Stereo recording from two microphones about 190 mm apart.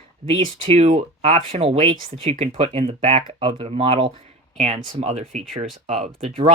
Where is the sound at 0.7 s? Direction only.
30° right (ahead or behind).